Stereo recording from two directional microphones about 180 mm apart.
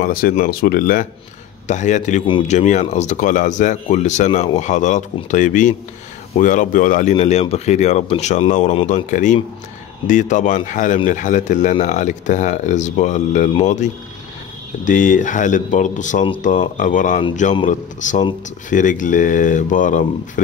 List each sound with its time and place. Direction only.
0.0 s speech: 55° left (ahead or behind)
1.7 s speech: 40° left (ahead or behind)
14.9 s speech: 45° left (ahead or behind)